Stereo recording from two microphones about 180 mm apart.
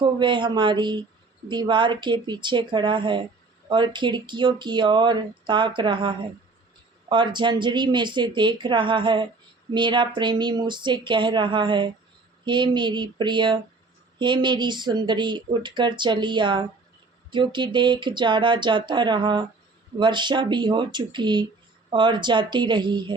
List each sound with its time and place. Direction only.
0.0 s speech: 25° right (ahead or behind)